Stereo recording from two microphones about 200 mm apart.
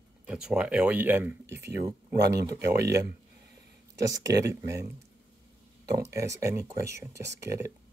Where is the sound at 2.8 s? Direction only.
55° right (ahead or behind).